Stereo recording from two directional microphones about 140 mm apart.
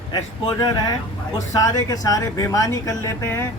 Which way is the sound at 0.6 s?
30° left (ahead or behind).